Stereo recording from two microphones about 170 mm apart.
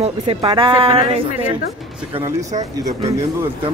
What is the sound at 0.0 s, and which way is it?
A woman's voice, 35° right (ahead or behind).